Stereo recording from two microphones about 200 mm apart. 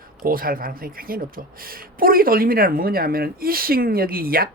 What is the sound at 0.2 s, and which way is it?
Speech, 45° right (ahead or behind).